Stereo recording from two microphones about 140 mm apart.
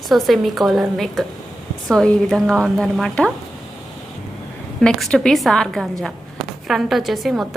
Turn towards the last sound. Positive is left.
turn(degrees=0)  # may be behind; listen again after turning